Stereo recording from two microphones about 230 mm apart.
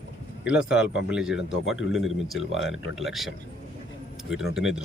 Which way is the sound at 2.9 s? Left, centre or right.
Centre.